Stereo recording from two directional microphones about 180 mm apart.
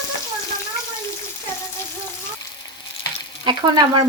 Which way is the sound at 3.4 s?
25° right (ahead or behind).